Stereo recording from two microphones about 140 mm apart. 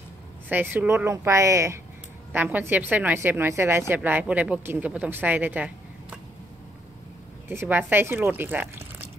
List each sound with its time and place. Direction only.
0.5 s a woman's voice: 15° right (ahead or behind)
7.4 s a woman's voice: 15° right (ahead or behind)